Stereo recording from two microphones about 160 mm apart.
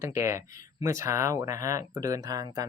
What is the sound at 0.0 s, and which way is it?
Speech, 15° right (ahead or behind).